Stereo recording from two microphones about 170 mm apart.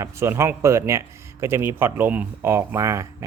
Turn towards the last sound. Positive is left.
turn(degrees=-15)  # may be behind; listen again after turning